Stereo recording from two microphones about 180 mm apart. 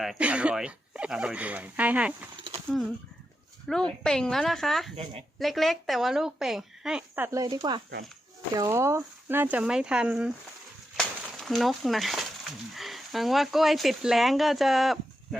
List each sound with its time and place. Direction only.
0.0 s speech: 5° right (ahead or behind)
3.7 s a woman's voice: 5° left (ahead or behind)
7.3 s speech: 20° right (ahead or behind); by 15.4 s centre (ahead or behind)